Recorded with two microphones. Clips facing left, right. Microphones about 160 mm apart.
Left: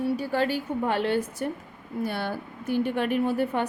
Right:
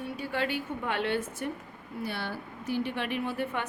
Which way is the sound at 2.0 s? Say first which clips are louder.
Left 5 dB; 50° left (ahead or behind).